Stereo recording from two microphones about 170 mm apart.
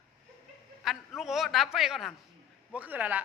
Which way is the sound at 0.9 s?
Centre (ahead or behind).